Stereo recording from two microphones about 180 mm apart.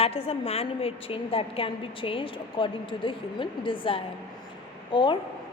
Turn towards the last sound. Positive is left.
turn(degrees=25)  # may be behind; listen again after turning